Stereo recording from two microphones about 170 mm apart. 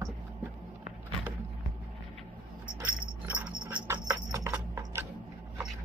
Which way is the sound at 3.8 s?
15° right (ahead or behind).